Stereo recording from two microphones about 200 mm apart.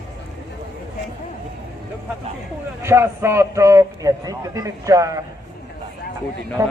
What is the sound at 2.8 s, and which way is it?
A man's voice, 15° right (ahead or behind).